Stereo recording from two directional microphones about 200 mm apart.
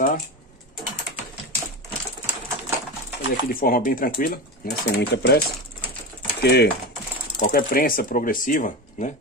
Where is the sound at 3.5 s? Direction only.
45° left (ahead or behind).